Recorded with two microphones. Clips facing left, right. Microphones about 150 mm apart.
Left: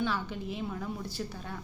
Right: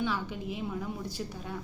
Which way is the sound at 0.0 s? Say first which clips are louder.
Even; 15° right (ahead or behind).